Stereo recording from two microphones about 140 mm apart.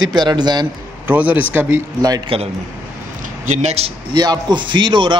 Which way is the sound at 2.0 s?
25° right (ahead or behind).